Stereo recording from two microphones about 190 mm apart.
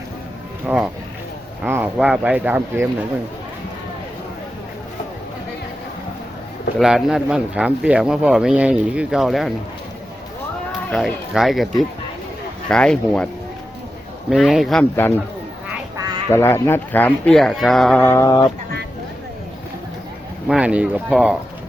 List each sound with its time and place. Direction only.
0.6 s speech: 5° right (ahead or behind)
6.7 s speech: centre (ahead or behind)
10.7 s speech: centre (ahead or behind)
14.3 s speech: centre (ahead or behind)
16.3 s speech: 15° left (ahead or behind)
18.0 s speech: 15° left (ahead or behind)
20.5 s speech: 5° right (ahead or behind)